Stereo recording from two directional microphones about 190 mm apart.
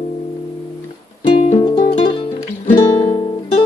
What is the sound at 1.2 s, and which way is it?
Music, 30° left (ahead or behind).